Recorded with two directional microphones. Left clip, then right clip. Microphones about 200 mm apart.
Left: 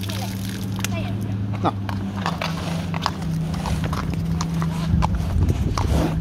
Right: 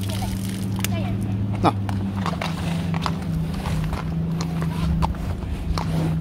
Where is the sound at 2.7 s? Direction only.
30° left (ahead or behind).